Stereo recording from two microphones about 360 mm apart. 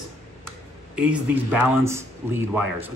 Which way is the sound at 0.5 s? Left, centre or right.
Centre.